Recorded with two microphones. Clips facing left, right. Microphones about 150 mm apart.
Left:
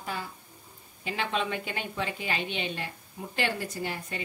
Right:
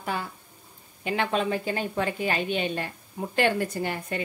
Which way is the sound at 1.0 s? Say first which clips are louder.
Right 5 dB; 50° right (ahead or behind).